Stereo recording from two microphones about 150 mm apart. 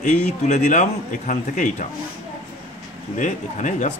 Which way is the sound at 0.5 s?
55° left (ahead or behind).